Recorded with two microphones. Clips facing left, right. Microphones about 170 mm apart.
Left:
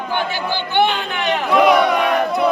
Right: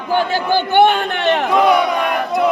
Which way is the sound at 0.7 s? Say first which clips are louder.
Right 4 dB; 55° right (ahead or behind).